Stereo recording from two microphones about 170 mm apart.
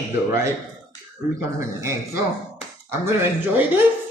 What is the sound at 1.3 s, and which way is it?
Speech, 15° right (ahead or behind).